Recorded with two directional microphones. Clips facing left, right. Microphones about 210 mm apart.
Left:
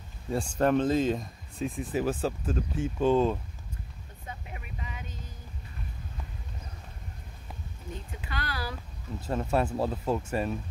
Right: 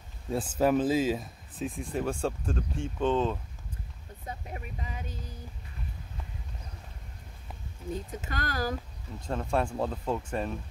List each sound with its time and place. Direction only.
0.3 s speech: 5° right (ahead or behind)
4.3 s a sound: 40° right (ahead or behind)
8.1 s speech: 45° right (ahead or behind)
9.2 s speech: 5° left (ahead or behind)